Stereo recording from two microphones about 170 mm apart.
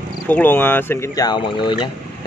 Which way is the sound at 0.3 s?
10° left (ahead or behind).